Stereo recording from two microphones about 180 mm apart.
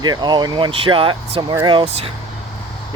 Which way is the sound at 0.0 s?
25° right (ahead or behind).